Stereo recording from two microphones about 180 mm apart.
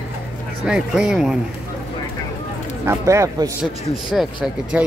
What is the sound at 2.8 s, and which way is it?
Speech, 15° right (ahead or behind).